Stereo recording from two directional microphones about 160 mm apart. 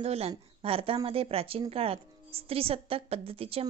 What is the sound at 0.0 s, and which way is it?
A woman's voice, 40° right (ahead or behind).